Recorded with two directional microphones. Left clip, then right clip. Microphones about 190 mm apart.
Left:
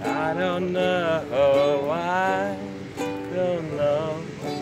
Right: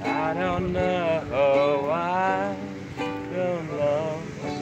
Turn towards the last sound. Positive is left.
turn(degrees=10)  # may be behind; listen again after turning